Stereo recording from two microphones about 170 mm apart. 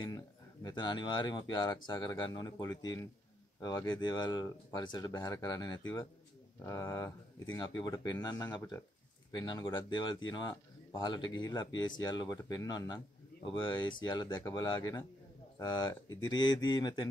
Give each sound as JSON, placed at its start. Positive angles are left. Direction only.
{"t": 0.0, "sound": "speech", "side_deg": 20}